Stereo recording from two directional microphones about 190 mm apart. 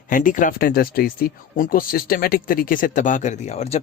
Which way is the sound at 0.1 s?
45° left (ahead or behind).